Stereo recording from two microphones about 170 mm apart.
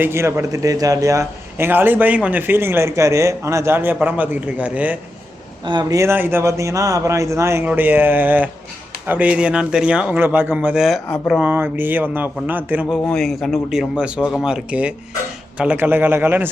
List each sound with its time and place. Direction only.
0.0 s a man's voice: 15° right (ahead or behind)
5.6 s a man's voice: 25° right (ahead or behind); by 11.4 s centre (ahead or behind)
11.4 s a man's voice: 10° right (ahead or behind)
13.1 s a man's voice: centre (ahead or behind)